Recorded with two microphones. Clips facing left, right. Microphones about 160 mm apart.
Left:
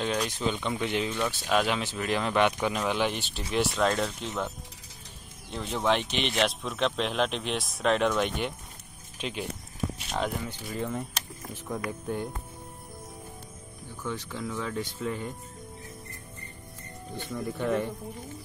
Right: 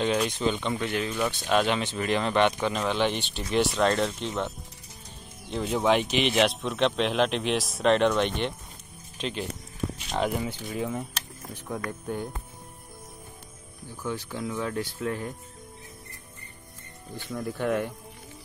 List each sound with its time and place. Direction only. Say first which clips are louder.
0.0 s speech: right 4 dB; 5° right (ahead or behind)
0.7 s speech: even; 15° left (ahead or behind)
1.5 s speech: right 2 dB; 5° left (ahead or behind)
14.0 s speech: right 2 dB; 5° right (ahead or behind)
17.2 s speech: right 1 dB; centre (ahead or behind)